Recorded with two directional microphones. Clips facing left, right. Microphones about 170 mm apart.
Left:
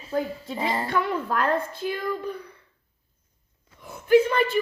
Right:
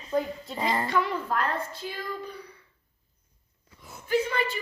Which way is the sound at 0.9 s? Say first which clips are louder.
Left 2 dB; 55° left (ahead or behind).